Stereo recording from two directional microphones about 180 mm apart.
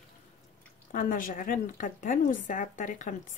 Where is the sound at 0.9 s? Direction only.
45° left (ahead or behind).